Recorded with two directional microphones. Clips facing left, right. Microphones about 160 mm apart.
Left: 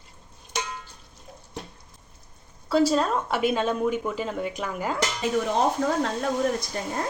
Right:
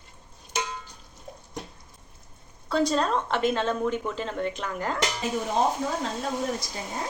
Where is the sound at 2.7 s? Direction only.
5° left (ahead or behind).